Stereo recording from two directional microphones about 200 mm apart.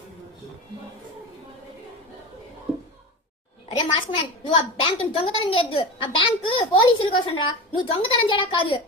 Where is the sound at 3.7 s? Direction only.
25° left (ahead or behind).